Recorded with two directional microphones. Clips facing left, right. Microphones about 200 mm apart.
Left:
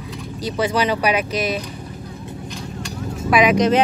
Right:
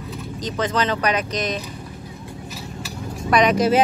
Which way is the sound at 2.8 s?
5° left (ahead or behind).